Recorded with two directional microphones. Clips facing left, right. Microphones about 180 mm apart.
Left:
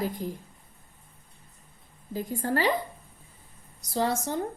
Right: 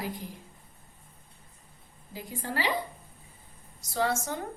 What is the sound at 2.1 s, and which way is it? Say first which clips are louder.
Speech: left 7 dB; 45° left (ahead or behind).